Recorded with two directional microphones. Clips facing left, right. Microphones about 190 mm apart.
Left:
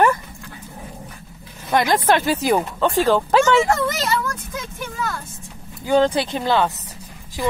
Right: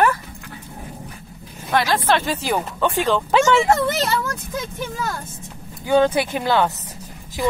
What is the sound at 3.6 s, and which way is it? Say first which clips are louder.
Speech: right 2 dB; 25° right (ahead or behind).